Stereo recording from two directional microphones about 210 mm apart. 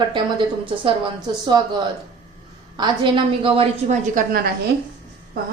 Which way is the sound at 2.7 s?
20° right (ahead or behind).